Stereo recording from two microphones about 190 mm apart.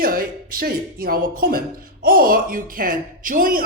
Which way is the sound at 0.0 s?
50° right (ahead or behind).